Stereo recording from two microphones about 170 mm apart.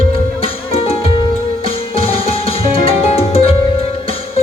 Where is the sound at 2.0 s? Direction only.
35° left (ahead or behind).